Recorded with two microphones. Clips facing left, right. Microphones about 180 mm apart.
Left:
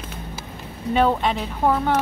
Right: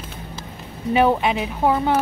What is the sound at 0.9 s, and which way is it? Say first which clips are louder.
Speech: right 2 dB; 10° right (ahead or behind).